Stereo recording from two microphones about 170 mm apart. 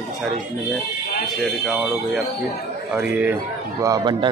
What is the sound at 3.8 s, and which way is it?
Speech, 25° right (ahead or behind).